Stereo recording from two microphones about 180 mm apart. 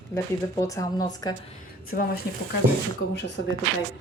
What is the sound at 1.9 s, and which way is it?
Speech, 55° left (ahead or behind).